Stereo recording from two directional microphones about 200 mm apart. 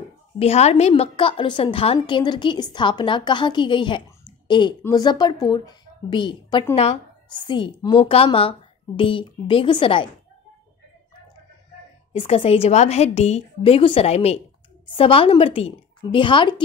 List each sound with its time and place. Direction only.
0.4 s a woman's voice: 30° left (ahead or behind)
12.1 s a woman's voice: 30° left (ahead or behind)